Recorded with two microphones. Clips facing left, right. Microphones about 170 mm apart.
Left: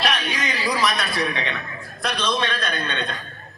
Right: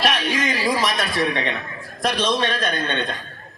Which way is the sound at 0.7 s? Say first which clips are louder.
Right 1 dB; 25° right (ahead or behind).